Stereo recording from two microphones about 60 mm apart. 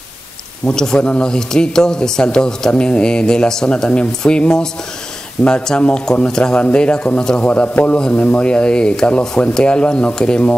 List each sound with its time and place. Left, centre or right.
0.7 s speech: centre